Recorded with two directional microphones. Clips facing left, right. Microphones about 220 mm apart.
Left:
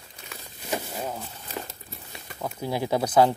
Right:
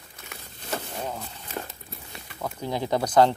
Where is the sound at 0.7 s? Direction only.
10° left (ahead or behind).